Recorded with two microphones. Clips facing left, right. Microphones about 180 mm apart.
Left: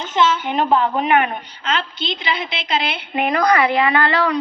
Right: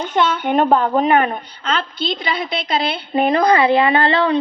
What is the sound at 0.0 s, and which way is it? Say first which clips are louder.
Speech: right 1 dB; 55° right (ahead or behind).